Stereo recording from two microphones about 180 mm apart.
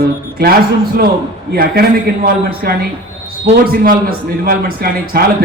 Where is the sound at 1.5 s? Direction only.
55° right (ahead or behind).